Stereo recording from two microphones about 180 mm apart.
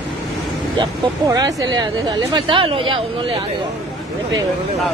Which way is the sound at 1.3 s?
20° right (ahead or behind).